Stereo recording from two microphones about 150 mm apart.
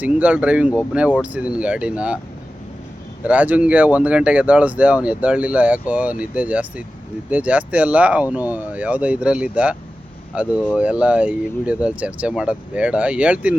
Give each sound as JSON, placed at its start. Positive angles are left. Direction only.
{"t": 0.0, "sound": "speech", "side_deg": -10}
{"t": 3.2, "sound": "speech", "side_deg": -10}